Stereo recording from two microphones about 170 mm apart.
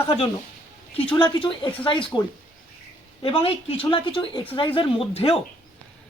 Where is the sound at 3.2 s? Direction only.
35° left (ahead or behind).